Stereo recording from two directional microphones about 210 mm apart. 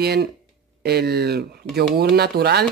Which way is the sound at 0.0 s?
50° right (ahead or behind).